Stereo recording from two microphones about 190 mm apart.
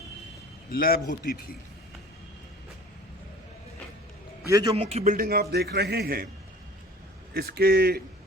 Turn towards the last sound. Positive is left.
turn(degrees=-55)  # may be behind; listen again after turning